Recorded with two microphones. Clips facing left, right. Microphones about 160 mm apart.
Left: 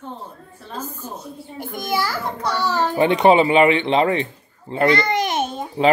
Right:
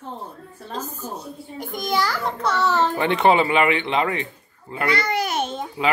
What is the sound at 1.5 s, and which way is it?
Speech, 15° right (ahead or behind).